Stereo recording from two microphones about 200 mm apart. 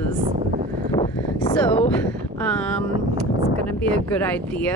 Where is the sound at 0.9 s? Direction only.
20° left (ahead or behind).